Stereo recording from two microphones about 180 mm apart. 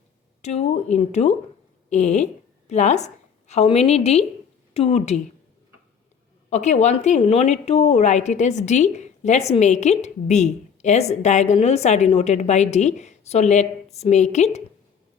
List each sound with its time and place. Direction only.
0.4 s a woman's voice: 35° left (ahead or behind)
6.5 s a woman's voice: 40° left (ahead or behind)